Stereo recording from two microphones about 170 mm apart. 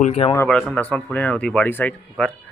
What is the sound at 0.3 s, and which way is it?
Speech, 5° left (ahead or behind).